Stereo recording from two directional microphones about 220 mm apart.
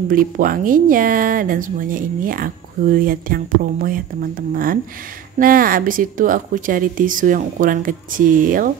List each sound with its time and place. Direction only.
0.1 s speech: 40° right (ahead or behind)